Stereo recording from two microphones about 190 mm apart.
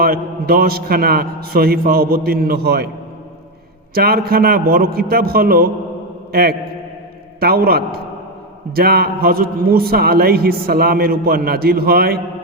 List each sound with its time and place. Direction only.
0.0 s a man's voice: 50° right (ahead or behind)
3.9 s a man's voice: 55° right (ahead or behind)